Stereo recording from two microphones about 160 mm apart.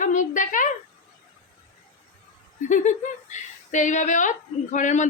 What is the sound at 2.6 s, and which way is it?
Speech, 50° left (ahead or behind).